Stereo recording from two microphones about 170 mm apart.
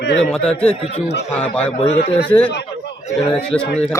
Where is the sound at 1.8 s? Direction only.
35° left (ahead or behind).